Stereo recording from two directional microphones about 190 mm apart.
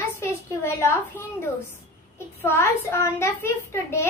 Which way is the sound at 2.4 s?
15° left (ahead or behind).